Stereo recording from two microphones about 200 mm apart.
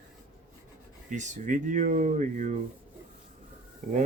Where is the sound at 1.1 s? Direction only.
35° right (ahead or behind).